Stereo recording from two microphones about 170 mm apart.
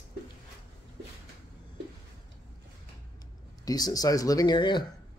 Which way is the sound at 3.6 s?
20° left (ahead or behind).